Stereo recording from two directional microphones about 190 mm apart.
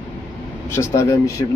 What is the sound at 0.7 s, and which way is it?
Speech, 15° left (ahead or behind).